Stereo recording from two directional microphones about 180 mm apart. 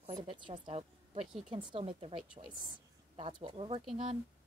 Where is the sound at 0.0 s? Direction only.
25° right (ahead or behind).